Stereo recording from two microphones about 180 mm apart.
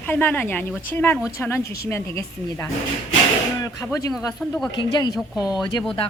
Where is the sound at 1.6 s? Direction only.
60° left (ahead or behind).